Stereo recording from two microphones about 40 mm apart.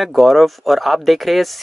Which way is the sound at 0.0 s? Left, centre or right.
Centre.